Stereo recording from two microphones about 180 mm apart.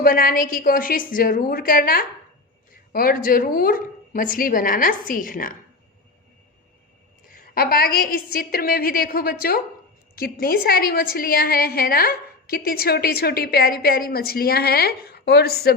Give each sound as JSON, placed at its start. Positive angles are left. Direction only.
{"t": 0.0, "sound": "speech", "side_deg": 55}
{"t": 7.3, "sound": "a woman's voice", "side_deg": 55}